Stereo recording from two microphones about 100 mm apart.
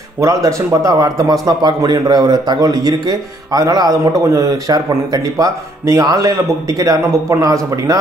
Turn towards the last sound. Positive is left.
turn(degrees=-35)  # may be behind; listen again after turning